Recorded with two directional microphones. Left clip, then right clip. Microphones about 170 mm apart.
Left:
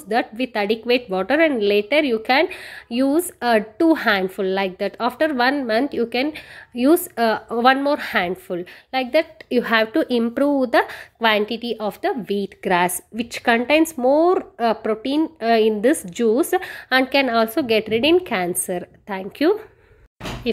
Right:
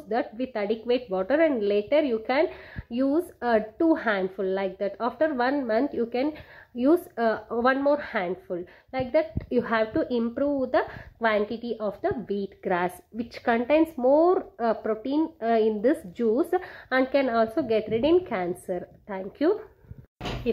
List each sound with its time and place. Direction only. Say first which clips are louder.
0.1 s a woman's voice: left 7 dB; 25° left (ahead or behind)
11.1 s a woman's voice: left 6 dB; 25° left (ahead or behind)